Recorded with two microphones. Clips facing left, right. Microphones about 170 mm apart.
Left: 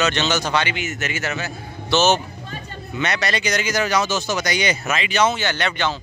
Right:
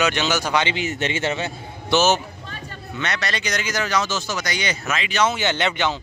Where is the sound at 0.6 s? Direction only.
30° right (ahead or behind).